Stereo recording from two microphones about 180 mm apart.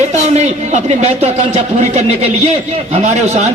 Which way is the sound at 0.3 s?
40° right (ahead or behind).